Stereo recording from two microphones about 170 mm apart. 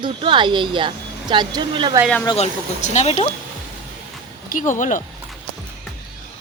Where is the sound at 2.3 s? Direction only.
40° left (ahead or behind).